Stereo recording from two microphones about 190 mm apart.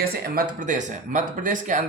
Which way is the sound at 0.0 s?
55° right (ahead or behind).